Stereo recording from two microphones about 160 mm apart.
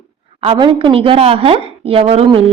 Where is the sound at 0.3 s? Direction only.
35° right (ahead or behind).